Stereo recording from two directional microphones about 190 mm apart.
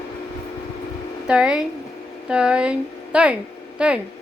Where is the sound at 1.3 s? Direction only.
5° right (ahead or behind).